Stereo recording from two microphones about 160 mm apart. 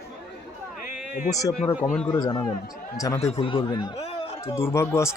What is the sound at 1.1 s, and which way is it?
Speech, 60° left (ahead or behind).